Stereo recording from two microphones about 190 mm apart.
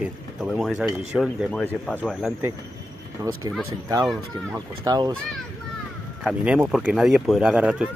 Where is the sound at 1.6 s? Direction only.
5° left (ahead or behind).